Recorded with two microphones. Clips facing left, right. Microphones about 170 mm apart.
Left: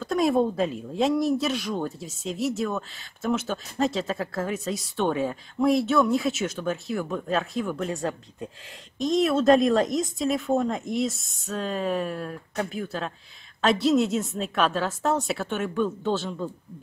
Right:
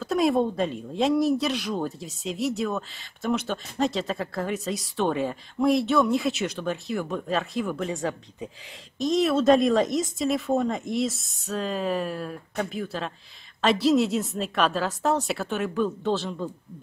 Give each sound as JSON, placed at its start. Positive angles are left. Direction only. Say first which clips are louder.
{"t": 0.0, "sound": "speech", "louder": "even", "side_deg": 0}